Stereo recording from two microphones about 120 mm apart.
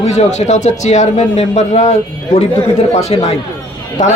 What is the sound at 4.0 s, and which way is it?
Speech, 85° left.